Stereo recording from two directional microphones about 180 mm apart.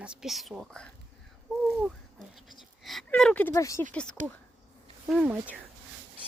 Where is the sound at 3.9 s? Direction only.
5° left (ahead or behind).